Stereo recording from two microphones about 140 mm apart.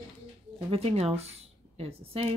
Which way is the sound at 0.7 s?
45° right (ahead or behind).